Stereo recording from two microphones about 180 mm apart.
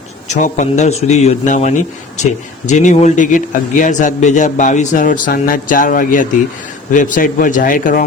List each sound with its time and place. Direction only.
0.3 s a man's voice: 40° left (ahead or behind)